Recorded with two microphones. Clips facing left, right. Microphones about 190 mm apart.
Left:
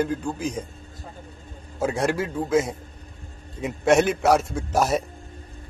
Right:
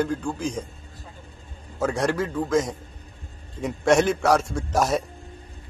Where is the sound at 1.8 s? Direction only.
10° left (ahead or behind).